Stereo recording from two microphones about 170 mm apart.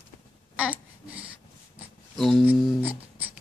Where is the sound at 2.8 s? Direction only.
10° right (ahead or behind).